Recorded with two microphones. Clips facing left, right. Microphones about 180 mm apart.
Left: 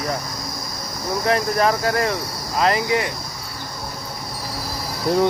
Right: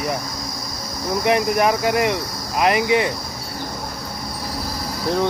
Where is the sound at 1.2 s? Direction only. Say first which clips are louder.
Right 1 dB; 15° right (ahead or behind).